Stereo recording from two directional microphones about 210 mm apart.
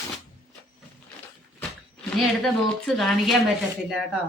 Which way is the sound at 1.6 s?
5° left (ahead or behind).